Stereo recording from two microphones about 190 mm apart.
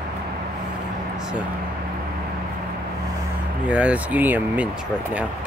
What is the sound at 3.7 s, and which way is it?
Speech, 5° right (ahead or behind).